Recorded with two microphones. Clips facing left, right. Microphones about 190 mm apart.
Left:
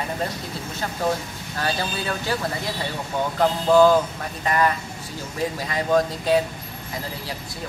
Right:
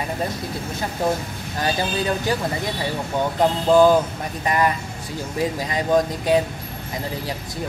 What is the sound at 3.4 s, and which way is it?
Speech, 15° right (ahead or behind).